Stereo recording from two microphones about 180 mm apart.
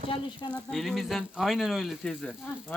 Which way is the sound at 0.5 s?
Centre (ahead or behind).